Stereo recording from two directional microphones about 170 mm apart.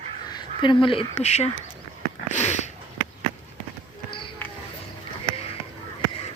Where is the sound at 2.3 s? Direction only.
40° left (ahead or behind).